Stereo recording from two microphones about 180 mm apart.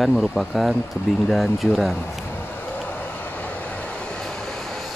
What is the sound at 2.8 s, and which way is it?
Vehicle, 10° left (ahead or behind).